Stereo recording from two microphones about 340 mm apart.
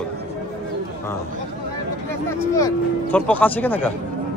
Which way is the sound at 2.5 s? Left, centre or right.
Centre.